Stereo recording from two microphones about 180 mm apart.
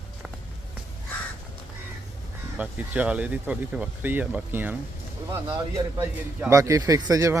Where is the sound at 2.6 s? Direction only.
10° right (ahead or behind).